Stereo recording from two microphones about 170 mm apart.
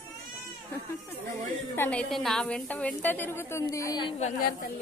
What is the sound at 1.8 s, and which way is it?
A woman's voice, 5° left (ahead or behind).